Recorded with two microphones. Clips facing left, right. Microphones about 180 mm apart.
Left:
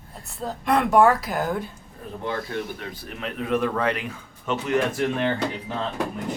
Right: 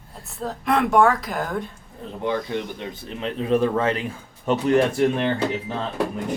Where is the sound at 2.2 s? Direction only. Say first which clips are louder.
Right 4 dB; 20° right (ahead or behind); by 4.7 s 35° right (ahead or behind).